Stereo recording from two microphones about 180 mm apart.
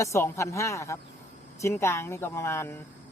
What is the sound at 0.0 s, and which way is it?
Speech, 15° left (ahead or behind).